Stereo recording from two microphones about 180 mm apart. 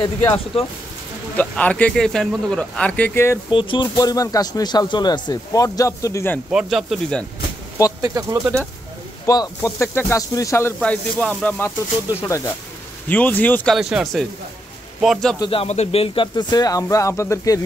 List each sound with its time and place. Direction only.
0.0 s speech: 25° left (ahead or behind)
1.3 s speech: 10° left (ahead or behind)
3.4 s speech: 25° left (ahead or behind)
6.5 s speech: centre (ahead or behind)
8.0 s speech: 20° right (ahead or behind)
9.2 s speech: 20° left (ahead or behind)
10.8 s speech: 5° left (ahead or behind)
13.7 s speech: centre (ahead or behind)
15.3 s speech: 25° left (ahead or behind)